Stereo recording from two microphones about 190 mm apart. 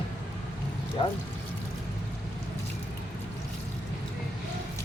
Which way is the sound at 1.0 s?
25° left (ahead or behind).